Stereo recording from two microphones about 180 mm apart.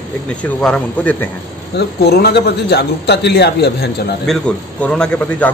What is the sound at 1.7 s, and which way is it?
A man's voice, 60° left (ahead or behind).